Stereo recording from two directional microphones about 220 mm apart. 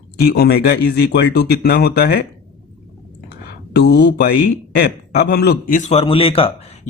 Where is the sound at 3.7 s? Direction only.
50° left (ahead or behind); by 6.5 s 25° left (ahead or behind).